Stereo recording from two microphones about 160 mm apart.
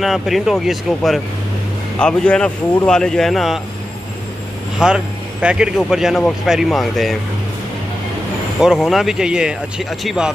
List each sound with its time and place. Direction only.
0.0 s speech: centre (ahead or behind)
4.7 s speech: 5° right (ahead or behind)
8.5 s speech: centre (ahead or behind)